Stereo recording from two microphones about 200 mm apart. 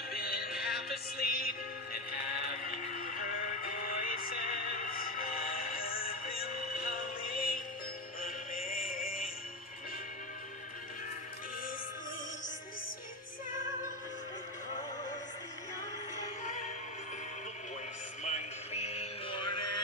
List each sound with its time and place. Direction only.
0.1 s music: 50° left (ahead or behind)
8.2 s synthetic singing: 45° left (ahead or behind)
16.4 s music: 40° left (ahead or behind)
18.2 s music: 35° left (ahead or behind)